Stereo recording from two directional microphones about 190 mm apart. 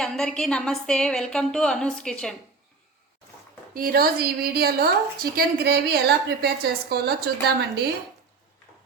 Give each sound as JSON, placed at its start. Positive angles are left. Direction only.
{"t": 0.0, "sound": "a woman's voice", "side_deg": 0}
{"t": 3.8, "sound": "a woman's voice", "side_deg": -50}